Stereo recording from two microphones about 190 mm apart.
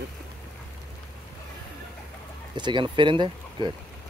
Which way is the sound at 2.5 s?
25° right (ahead or behind).